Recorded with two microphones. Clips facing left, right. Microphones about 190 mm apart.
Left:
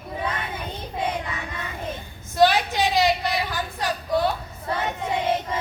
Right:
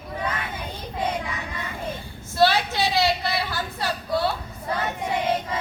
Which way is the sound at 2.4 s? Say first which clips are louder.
Left 2 dB; 15° left (ahead or behind).